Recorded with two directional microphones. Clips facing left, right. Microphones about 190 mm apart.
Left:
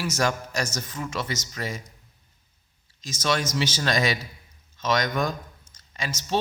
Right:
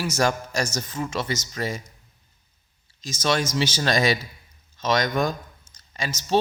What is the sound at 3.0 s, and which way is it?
Speech, 30° right (ahead or behind).